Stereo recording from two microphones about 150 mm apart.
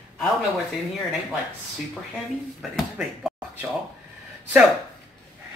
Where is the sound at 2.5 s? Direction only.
Centre (ahead or behind).